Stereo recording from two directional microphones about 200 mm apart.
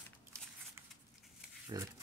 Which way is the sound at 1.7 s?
20° right (ahead or behind).